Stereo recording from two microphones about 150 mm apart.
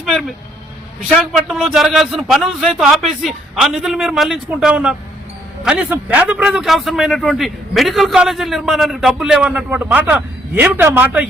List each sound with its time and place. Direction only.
0.0 s a man's voice: centre (ahead or behind)